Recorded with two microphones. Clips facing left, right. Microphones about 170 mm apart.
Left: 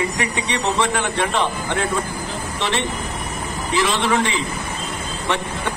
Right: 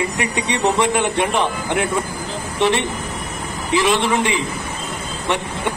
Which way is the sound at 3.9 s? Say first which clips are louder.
Right 1 dB; 15° right (ahead or behind).